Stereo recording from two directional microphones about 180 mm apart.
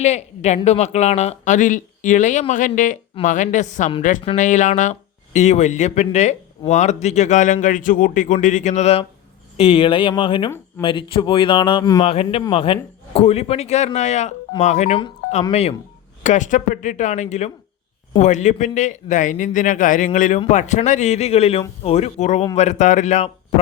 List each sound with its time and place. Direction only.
0.0 s speech: 40° left (ahead or behind); by 12.0 s 20° left (ahead or behind)
12.0 s speech: 30° left (ahead or behind)